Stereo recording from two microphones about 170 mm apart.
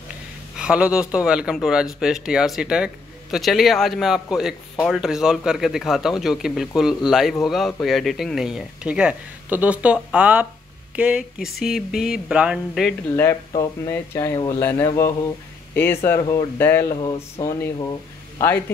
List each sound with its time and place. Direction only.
0.6 s speech: 5° right (ahead or behind)
13.1 s speech: 15° left (ahead or behind)
17.0 s speech: 30° left (ahead or behind)
17.5 s speech: 15° left (ahead or behind)